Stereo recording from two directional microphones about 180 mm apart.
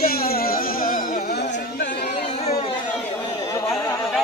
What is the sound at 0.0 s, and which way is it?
Music, 55° left (ahead or behind).